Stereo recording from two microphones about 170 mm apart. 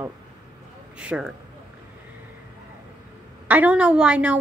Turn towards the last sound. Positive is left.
turn(degrees=-5)  # may be behind; listen again after turning